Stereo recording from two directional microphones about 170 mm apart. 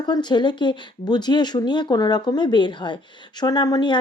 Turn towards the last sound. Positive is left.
turn(degrees=25)  # may be behind; listen again after turning